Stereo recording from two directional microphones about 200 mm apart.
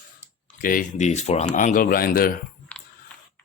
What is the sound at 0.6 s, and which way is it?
Speech, 45° left (ahead or behind).